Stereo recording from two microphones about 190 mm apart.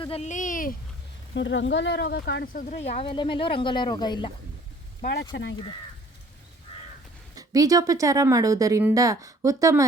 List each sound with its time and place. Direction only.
0.0 s speech: 35° left (ahead or behind)
1.3 s speech: 70° left (ahead or behind); by 4.3 s 20° left (ahead or behind)
5.3 s speech: 70° left (ahead or behind)
7.3 s speech: 20° right (ahead or behind)